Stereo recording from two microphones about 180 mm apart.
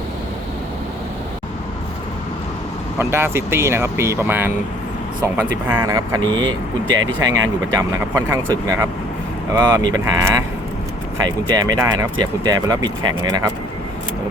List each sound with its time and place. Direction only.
3.0 s speech: 15° right (ahead or behind)
5.6 s speech: 15° right (ahead or behind)